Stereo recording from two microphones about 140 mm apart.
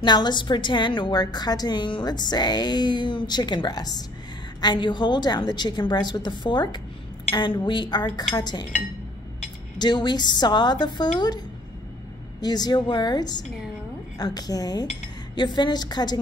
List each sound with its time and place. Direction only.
0.0 s a woman's voice: 30° left (ahead or behind)
9.8 s a woman's voice: 30° left (ahead or behind)